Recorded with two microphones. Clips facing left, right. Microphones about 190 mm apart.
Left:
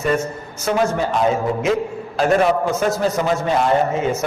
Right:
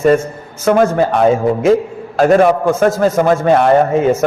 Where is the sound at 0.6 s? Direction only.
55° right (ahead or behind).